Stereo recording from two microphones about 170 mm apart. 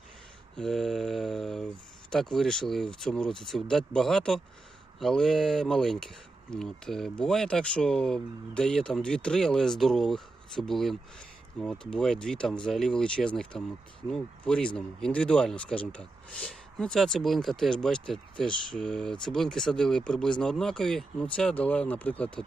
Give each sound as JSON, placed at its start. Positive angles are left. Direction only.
{"t": 0.5, "sound": "speech", "side_deg": 5}